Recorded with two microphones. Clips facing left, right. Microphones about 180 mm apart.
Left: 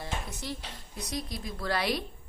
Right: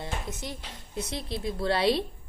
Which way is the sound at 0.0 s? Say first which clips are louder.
Right 2 dB; 20° right (ahead or behind).